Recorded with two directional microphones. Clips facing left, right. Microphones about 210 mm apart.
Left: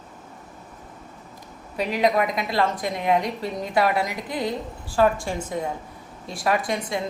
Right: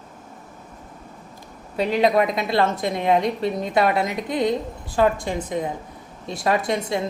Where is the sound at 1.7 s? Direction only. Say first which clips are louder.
Right 3 dB; 25° right (ahead or behind).